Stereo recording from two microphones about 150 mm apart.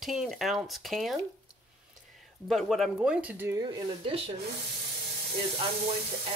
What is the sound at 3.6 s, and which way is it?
Speech, 35° right (ahead or behind).